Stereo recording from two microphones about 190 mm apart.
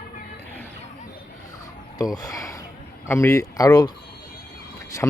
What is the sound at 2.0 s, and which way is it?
Speech, 20° left (ahead or behind).